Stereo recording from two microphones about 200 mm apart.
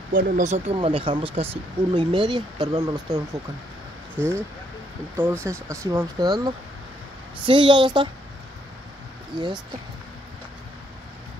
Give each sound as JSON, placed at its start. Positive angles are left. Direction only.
{"t": 0.1, "sound": "speech", "side_deg": -40}
{"t": 4.2, "sound": "speech", "side_deg": 5}
{"t": 5.1, "sound": "speech", "side_deg": -10}